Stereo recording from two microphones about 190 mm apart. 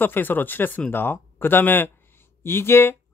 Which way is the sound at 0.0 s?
10° left (ahead or behind).